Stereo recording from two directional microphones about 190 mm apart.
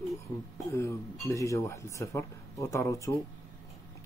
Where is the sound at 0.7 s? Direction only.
15° left (ahead or behind).